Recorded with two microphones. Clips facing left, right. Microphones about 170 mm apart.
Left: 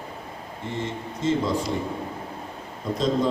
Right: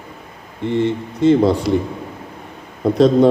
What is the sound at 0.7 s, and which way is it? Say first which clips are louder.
Speech: right 12 dB; 65° right (ahead or behind).